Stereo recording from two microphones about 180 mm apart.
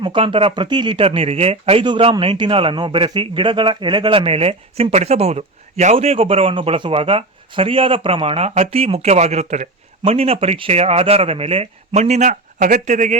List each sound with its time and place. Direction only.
0.0 s speech: 25° right (ahead or behind); by 13.1 s 45° right (ahead or behind)